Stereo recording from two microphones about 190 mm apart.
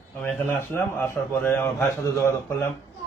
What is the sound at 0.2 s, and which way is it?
A man's voice, centre (ahead or behind).